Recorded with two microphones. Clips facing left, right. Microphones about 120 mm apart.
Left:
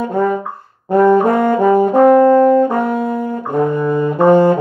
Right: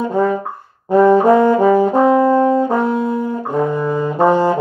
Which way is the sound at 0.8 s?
55° left (ahead or behind).